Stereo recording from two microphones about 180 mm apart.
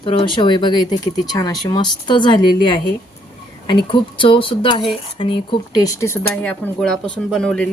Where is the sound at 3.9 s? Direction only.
30° left (ahead or behind); by 7.6 s 5° left (ahead or behind).